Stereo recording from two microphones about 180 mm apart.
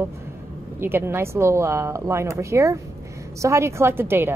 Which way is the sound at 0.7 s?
10° right (ahead or behind).